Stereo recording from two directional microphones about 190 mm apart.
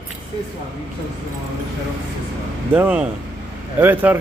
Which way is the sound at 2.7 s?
10° right (ahead or behind).